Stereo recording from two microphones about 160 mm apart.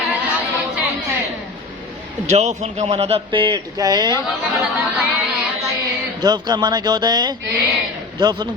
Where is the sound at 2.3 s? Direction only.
45° right (ahead or behind); by 4.0 s 25° right (ahead or behind).